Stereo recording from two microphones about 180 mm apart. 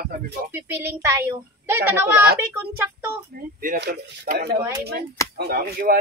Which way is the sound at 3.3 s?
50° right (ahead or behind).